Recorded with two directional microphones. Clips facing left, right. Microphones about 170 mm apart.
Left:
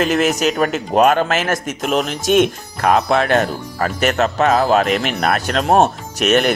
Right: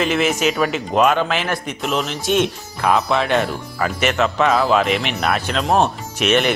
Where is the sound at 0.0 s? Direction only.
40° left (ahead or behind).